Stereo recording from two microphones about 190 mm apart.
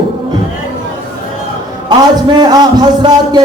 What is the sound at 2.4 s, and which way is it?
A man's voice, 20° right (ahead or behind).